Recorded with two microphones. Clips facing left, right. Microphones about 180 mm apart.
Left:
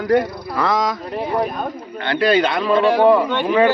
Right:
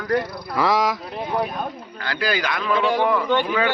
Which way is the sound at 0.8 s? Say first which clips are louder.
Left 2 dB; centre (ahead or behind).